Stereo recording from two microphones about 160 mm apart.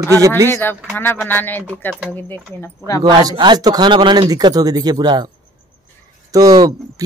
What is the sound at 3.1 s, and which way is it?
Speech, 30° right (ahead or behind).